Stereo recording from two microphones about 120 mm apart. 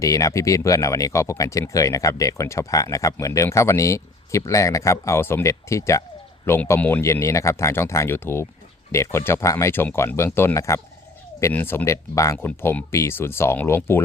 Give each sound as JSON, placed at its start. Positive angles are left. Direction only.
{"t": 0.0, "sound": "speech", "side_deg": 25}
{"t": 12.5, "sound": "speech", "side_deg": 10}
{"t": 12.9, "sound": "speech", "side_deg": 20}